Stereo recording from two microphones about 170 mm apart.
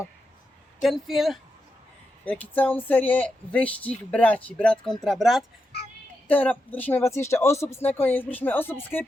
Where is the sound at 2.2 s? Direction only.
10° left (ahead or behind).